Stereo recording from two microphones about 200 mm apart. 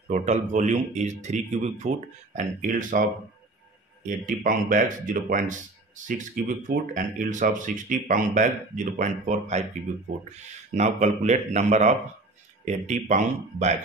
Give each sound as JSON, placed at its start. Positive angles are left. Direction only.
{"t": 0.1, "sound": "a man's voice", "side_deg": -35}